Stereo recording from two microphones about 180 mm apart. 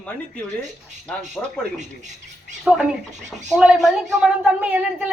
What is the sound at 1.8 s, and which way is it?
Speech, 40° right (ahead or behind).